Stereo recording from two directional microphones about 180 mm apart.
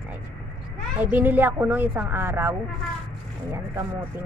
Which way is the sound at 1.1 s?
10° right (ahead or behind).